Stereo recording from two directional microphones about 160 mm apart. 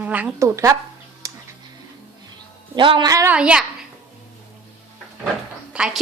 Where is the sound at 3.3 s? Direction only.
5° right (ahead or behind).